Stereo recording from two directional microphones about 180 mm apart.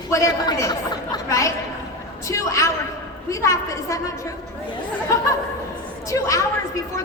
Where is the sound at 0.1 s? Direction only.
20° left (ahead or behind).